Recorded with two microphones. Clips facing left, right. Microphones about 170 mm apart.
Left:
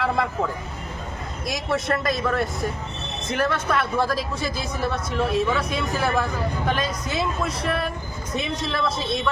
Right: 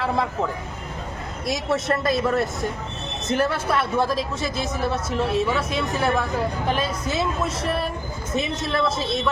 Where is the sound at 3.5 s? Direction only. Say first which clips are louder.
Even; 30° right (ahead or behind).